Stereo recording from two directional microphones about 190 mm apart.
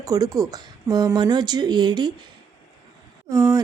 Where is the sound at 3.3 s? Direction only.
20° right (ahead or behind).